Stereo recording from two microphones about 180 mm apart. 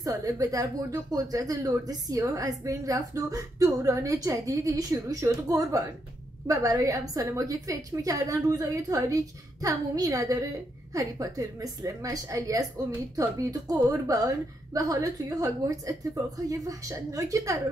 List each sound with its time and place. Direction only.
0.0 s a woman's voice: 20° right (ahead or behind)